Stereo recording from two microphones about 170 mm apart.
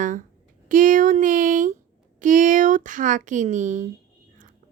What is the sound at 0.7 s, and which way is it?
Speech, 50° right (ahead or behind).